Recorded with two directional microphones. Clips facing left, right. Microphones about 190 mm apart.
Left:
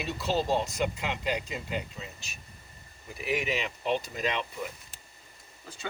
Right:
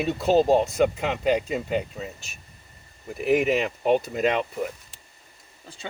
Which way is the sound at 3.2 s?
50° right (ahead or behind).